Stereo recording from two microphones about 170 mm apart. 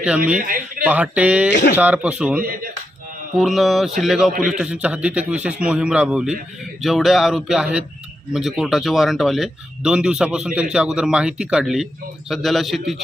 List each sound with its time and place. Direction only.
0.3 s a man's voice: 55° right (ahead or behind)
0.9 s speech: 10° right (ahead or behind)
1.5 s speech: 90° left
1.7 s speech: 10° right (ahead or behind)